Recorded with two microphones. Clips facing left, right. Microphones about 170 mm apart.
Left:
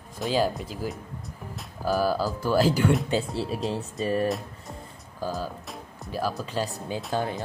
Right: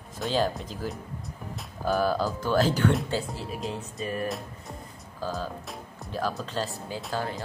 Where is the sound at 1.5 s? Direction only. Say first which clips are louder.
Left 1 dB; 5° left (ahead or behind).